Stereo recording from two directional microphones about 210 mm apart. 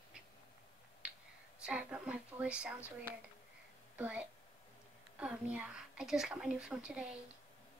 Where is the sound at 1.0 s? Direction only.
5° right (ahead or behind).